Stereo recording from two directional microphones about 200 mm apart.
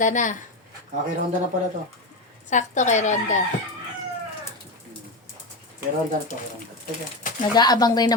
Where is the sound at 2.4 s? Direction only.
35° left (ahead or behind).